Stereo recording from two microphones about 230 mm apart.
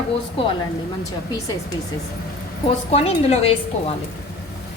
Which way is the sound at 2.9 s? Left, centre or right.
Left.